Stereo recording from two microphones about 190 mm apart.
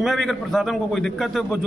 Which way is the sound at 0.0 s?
Centre (ahead or behind).